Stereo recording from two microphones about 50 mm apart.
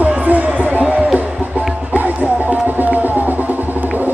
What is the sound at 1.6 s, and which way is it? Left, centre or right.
Music, right.